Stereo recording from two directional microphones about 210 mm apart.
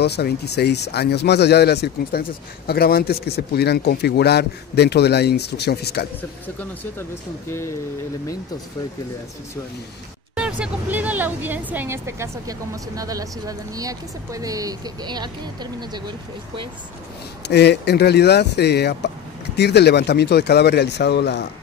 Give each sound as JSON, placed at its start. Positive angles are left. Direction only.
{"t": 0.0, "sound": "speech", "side_deg": 50}
{"t": 6.6, "sound": "speech", "side_deg": 10}
{"t": 10.3, "sound": "speech", "side_deg": -5}
{"t": 17.5, "sound": "speech", "side_deg": 50}